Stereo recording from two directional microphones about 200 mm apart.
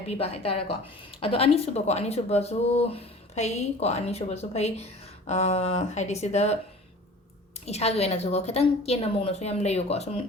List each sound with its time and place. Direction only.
0.1 s speech: 30° left (ahead or behind)
7.6 s speech: 30° left (ahead or behind)